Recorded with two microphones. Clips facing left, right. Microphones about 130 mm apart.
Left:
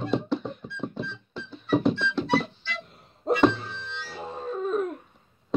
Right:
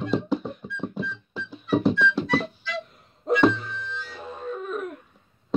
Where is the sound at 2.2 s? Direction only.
30° left (ahead or behind).